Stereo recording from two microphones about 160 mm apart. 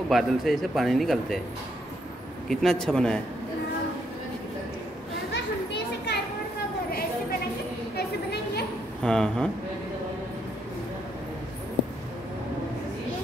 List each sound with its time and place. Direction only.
0.1 s speech: centre (ahead or behind)
2.4 s speech: centre (ahead or behind)
5.3 s children playing: 90° left
7.9 s a sound: 90° left
9.0 s speech: 5° left (ahead or behind)